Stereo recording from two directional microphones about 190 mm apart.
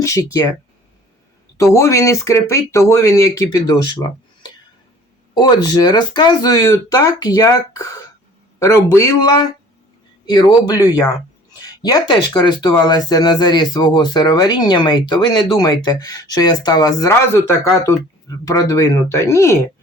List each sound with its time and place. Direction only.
0.0 s speech: 15° left (ahead or behind)
1.5 s speech: 15° left (ahead or behind)
5.3 s speech: 20° left (ahead or behind)